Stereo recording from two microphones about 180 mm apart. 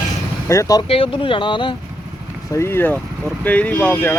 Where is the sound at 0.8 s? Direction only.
30° left (ahead or behind).